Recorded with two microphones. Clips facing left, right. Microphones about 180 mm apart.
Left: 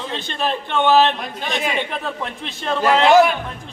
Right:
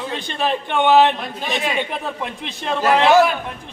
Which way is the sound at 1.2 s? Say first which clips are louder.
Even; centre (ahead or behind).